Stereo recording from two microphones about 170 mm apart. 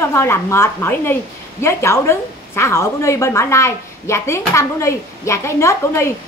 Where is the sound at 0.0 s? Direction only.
15° left (ahead or behind).